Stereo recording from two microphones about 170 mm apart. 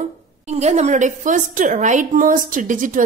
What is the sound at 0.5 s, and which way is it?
A woman's voice, 40° right (ahead or behind).